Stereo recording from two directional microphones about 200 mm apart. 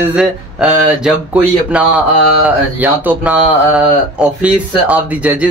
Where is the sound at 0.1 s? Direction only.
5° right (ahead or behind).